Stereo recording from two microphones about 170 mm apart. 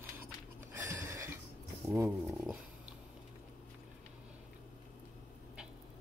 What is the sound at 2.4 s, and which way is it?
Dog, 5° right (ahead or behind).